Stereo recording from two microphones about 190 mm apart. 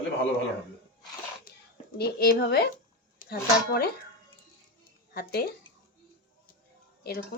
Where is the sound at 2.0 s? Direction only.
55° left (ahead or behind).